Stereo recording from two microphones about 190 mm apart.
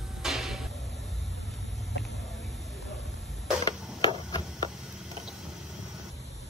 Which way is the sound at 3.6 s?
20° left (ahead or behind).